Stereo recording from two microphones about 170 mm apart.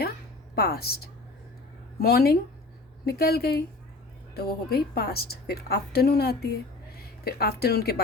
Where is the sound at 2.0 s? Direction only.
65° left (ahead or behind).